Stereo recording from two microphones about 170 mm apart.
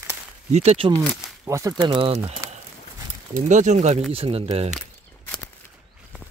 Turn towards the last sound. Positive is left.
turn(degrees=-40)  # may be behind; listen again after turning